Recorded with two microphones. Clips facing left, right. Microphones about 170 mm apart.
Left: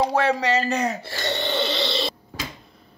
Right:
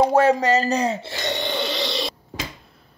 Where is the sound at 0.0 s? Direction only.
45° right (ahead or behind); by 2.1 s 10° right (ahead or behind).